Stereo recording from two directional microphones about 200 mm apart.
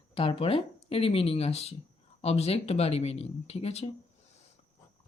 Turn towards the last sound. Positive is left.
turn(degrees=30)  # may be behind; listen again after turning